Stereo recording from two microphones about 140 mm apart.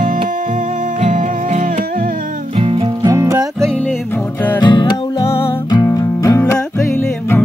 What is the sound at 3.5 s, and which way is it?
Music, 5° left (ahead or behind).